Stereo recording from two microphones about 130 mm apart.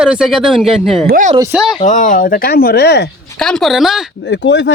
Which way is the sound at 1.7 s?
70° left (ahead or behind).